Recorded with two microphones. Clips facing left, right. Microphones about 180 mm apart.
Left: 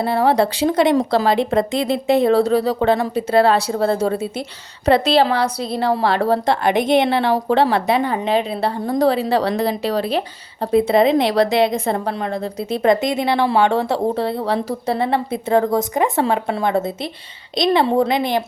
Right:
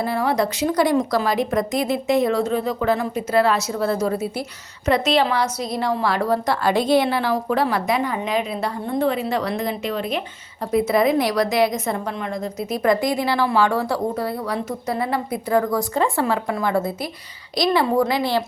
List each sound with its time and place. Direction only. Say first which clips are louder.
0.0 s a woman's voice: left 5 dB; 30° left (ahead or behind)